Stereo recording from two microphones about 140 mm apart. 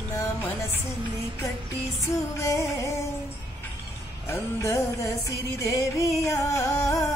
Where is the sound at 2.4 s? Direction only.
20° left (ahead or behind).